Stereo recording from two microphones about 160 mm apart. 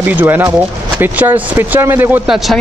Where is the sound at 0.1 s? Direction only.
10° right (ahead or behind).